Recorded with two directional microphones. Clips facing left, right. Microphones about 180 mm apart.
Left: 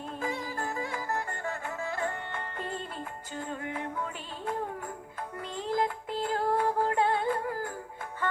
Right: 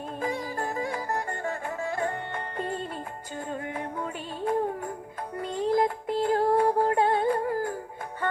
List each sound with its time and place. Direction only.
0.2 s music: 45° right (ahead or behind)